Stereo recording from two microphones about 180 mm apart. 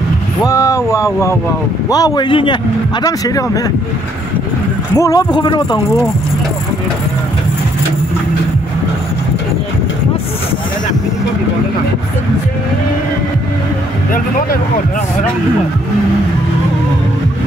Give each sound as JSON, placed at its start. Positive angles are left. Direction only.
{"t": 0.4, "sound": "a sound", "side_deg": 15}
{"t": 1.9, "sound": "a man's voice", "side_deg": 20}
{"t": 4.9, "sound": "a man's voice", "side_deg": 20}